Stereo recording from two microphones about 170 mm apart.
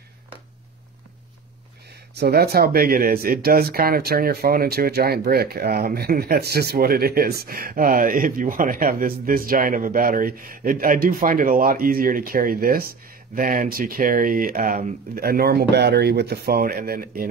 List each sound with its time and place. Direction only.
2.1 s speech: 70° right (ahead or behind)